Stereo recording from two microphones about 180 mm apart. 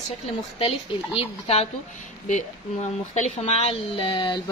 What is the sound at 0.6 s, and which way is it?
Speech, 30° left (ahead or behind).